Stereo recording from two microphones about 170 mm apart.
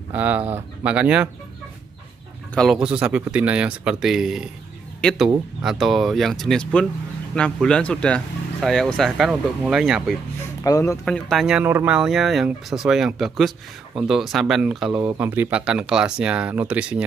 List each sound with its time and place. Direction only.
0.1 s speech: 10° right (ahead or behind)
2.5 s speech: centre (ahead or behind)
10.6 s speech: 20° left (ahead or behind)
11.1 s speech: centre (ahead or behind)